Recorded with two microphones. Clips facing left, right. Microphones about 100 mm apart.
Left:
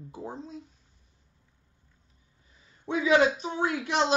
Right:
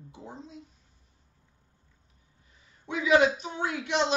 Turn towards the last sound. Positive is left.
turn(degrees=35)  # may be behind; listen again after turning